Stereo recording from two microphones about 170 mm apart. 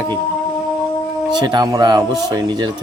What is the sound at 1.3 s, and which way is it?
A man's voice, 25° right (ahead or behind).